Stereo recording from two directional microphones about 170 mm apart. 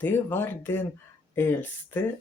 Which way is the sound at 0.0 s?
10° left (ahead or behind).